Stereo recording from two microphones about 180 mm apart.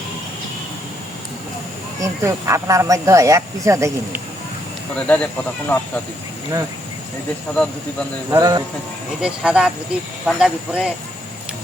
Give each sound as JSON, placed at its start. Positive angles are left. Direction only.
{"t": 2.0, "sound": "speech", "side_deg": -15}
{"t": 4.9, "sound": "speech", "side_deg": 5}
{"t": 7.5, "sound": "speech", "side_deg": 5}
{"t": 8.3, "sound": "a man's voice", "side_deg": -20}
{"t": 9.2, "sound": "speech", "side_deg": -5}